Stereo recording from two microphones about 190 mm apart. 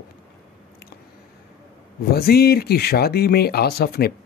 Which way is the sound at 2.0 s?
55° left (ahead or behind).